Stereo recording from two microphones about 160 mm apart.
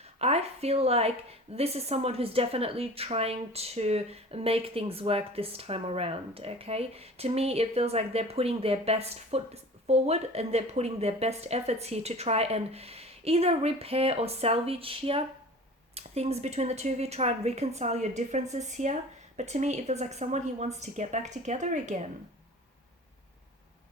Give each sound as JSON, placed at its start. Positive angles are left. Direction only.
{"t": 0.0, "sound": "a woman's voice", "side_deg": -40}